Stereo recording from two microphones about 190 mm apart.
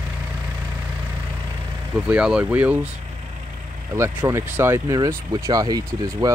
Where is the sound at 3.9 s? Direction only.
15° right (ahead or behind).